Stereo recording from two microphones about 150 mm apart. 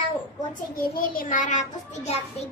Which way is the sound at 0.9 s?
70° left (ahead or behind).